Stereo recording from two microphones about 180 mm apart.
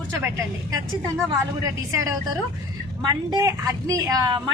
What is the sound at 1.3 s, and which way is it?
A woman's voice, 20° right (ahead or behind).